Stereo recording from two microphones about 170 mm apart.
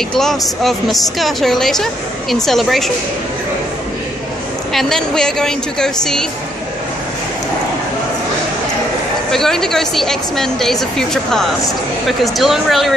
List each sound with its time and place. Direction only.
0.2 s a woman's voice: centre (ahead or behind)
4.7 s a woman's voice: 5° left (ahead or behind)
9.3 s a woman's voice: centre (ahead or behind)